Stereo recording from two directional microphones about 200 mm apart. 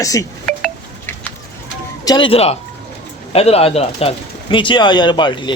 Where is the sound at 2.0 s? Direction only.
25° left (ahead or behind).